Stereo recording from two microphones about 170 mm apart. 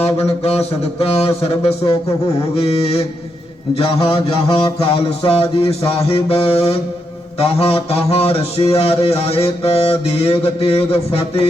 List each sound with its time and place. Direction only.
0.0 s mantra: 35° left (ahead or behind)